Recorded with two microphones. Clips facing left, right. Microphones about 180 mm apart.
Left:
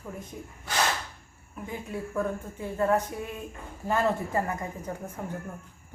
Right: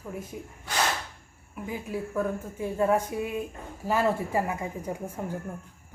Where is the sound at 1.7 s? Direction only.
5° right (ahead or behind).